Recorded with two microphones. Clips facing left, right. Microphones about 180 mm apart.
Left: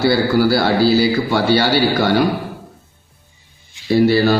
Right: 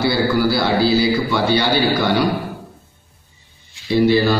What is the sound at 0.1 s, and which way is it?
Speech, 50° left (ahead or behind).